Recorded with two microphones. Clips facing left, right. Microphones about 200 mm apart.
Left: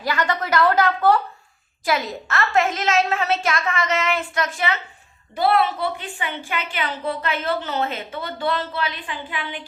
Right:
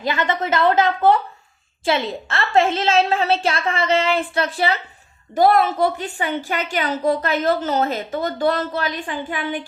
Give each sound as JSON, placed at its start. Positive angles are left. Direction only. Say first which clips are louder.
{"t": 0.0, "sound": "a woman's voice", "louder": "right 2 dB", "side_deg": -20}
{"t": 5.3, "sound": "a woman's voice", "louder": "right 4 dB", "side_deg": -45}